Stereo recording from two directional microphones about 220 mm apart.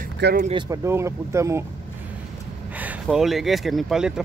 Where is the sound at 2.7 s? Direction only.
5° right (ahead or behind).